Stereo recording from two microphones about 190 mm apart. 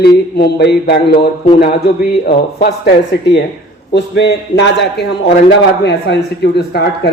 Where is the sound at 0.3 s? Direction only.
60° left (ahead or behind).